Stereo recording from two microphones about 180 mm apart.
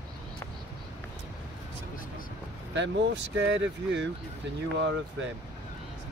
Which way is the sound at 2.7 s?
85° right.